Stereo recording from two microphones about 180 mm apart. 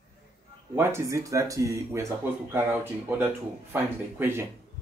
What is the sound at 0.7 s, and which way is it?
Speech, 15° right (ahead or behind).